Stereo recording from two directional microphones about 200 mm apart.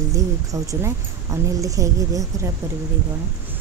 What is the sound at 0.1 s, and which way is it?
Speech, 15° right (ahead or behind).